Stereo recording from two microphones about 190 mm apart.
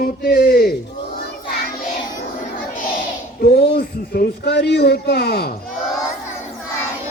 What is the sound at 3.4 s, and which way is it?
Speech, 50° left (ahead or behind).